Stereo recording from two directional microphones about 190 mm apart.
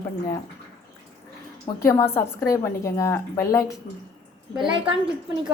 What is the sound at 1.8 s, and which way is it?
A woman's voice, 15° left (ahead or behind).